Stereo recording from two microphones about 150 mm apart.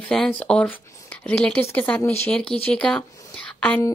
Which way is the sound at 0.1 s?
5° left (ahead or behind).